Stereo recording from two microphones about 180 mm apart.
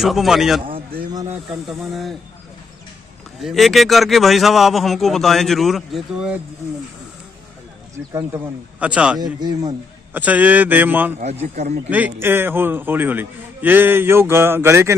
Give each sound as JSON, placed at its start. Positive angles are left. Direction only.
{"t": 0.0, "sound": "a man's voice", "side_deg": 0}
{"t": 3.4, "sound": "a man's voice", "side_deg": 0}
{"t": 8.1, "sound": "a man's voice", "side_deg": -15}
{"t": 9.2, "sound": "a man's voice", "side_deg": -20}
{"t": 10.1, "sound": "a man's voice", "side_deg": -10}
{"t": 11.6, "sound": "speech", "side_deg": -40}
{"t": 11.9, "sound": "a man's voice", "side_deg": -10}